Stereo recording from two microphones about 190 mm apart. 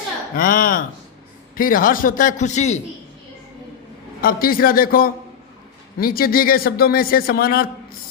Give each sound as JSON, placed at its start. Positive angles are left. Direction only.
{"t": 0.3, "sound": "a man's voice", "side_deg": 50}
{"t": 4.2, "sound": "a man's voice", "side_deg": 50}